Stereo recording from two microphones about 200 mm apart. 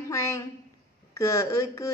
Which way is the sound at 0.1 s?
15° left (ahead or behind).